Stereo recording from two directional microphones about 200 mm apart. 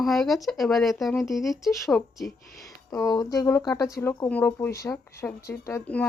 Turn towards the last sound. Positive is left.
turn(degrees=10)  # may be behind; listen again after turning